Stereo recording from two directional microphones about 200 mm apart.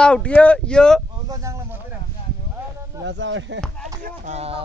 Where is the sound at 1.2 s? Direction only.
15° right (ahead or behind).